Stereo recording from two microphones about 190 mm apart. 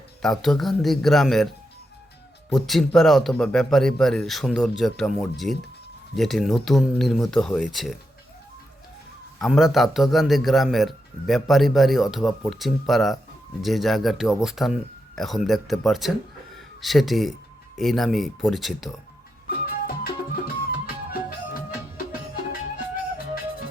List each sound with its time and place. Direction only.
0.2 s speech: centre (ahead or behind)
2.5 s speech: centre (ahead or behind)
9.4 s speech: centre (ahead or behind)
19.5 s music: 55° left (ahead or behind)